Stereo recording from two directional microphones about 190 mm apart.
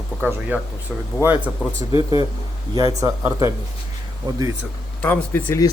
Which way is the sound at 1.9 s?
20° right (ahead or behind).